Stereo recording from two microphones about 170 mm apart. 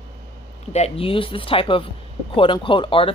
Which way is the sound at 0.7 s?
35° left (ahead or behind).